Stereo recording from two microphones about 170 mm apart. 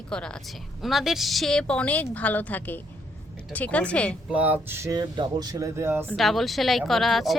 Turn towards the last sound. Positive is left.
turn(degrees=0)  # may be behind; listen again after turning